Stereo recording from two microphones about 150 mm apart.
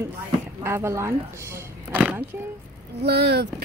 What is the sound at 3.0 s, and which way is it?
Speech, 90° right.